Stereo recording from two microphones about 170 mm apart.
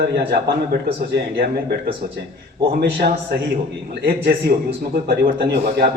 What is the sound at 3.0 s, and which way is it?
Speech, 60° right (ahead or behind).